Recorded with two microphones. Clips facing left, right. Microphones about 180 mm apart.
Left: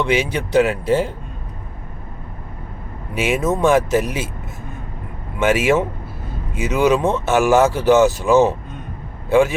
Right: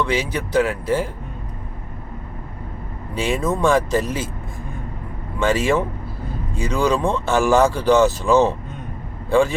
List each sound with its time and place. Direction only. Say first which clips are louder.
0.0 s speech: left 3 dB; 25° left (ahead or behind)
3.2 s speech: left 2 dB; 20° left (ahead or behind)
5.4 s speech: left 2 dB; 20° left (ahead or behind)